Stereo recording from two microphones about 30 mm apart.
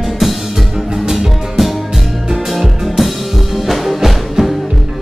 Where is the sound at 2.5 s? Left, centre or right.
Centre.